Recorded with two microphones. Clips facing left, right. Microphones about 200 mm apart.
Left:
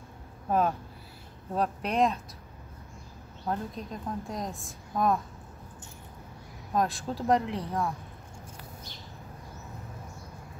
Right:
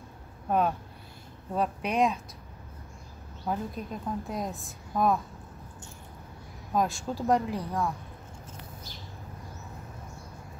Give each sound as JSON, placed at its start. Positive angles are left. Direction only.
{"t": 0.5, "sound": "a woman's voice", "side_deg": 0}
{"t": 3.4, "sound": "a woman's voice", "side_deg": -5}
{"t": 6.7, "sound": "a woman's voice", "side_deg": 0}